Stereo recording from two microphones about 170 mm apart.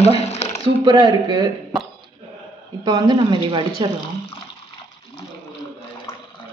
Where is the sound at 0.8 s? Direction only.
25° right (ahead or behind).